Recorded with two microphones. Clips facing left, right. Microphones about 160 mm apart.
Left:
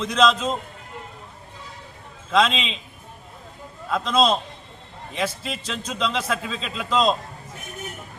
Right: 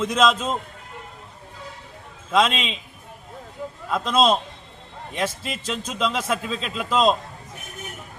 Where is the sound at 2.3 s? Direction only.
5° right (ahead or behind).